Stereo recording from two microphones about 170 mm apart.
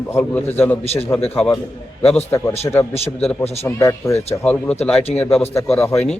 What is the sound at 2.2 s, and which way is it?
A man's voice, 15° left (ahead or behind).